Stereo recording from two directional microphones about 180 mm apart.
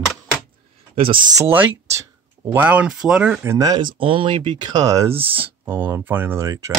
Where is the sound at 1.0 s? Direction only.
25° right (ahead or behind); by 3.5 s 5° right (ahead or behind).